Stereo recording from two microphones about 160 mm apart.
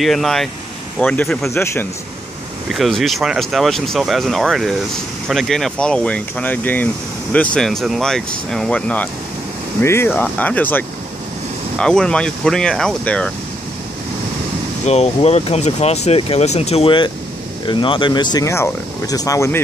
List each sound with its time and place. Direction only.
0.0 s speech: centre (ahead or behind)
2.7 s speech: centre (ahead or behind)
14.9 s speech: 40° left (ahead or behind); by 19.6 s 20° left (ahead or behind)